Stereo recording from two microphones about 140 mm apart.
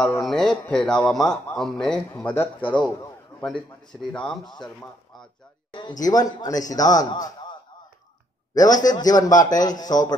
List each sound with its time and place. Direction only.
0.0 s a man's voice: 5° left (ahead or behind)
5.7 s a man's voice: 35° left (ahead or behind)
8.8 s a man's voice: 30° left (ahead or behind)